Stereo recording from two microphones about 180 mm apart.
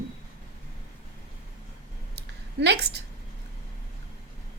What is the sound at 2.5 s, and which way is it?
Speech, 70° right (ahead or behind).